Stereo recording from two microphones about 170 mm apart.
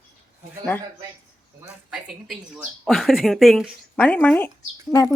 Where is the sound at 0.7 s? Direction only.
10° left (ahead or behind).